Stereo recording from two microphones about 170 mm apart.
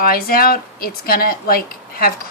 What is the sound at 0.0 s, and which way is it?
Speech, 60° left (ahead or behind).